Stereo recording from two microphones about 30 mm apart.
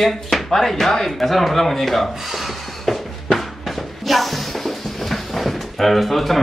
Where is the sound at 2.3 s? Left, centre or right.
Centre.